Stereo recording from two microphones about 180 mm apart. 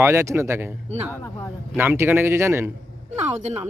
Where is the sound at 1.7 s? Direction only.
15° right (ahead or behind).